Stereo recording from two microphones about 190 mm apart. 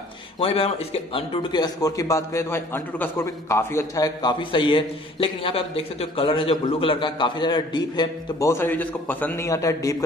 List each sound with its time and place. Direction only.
0.4 s a man's voice: 30° left (ahead or behind)